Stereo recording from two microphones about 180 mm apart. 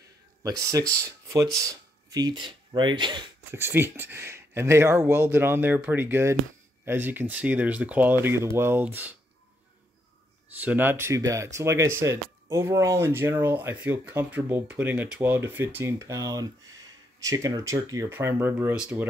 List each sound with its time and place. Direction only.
0.4 s speech: 15° right (ahead or behind)
3.5 s speech: 15° right (ahead or behind)
10.6 s speech: 10° right (ahead or behind)